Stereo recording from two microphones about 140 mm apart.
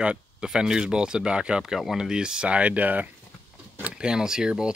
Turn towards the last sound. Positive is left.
turn(degrees=-5)  # may be behind; listen again after turning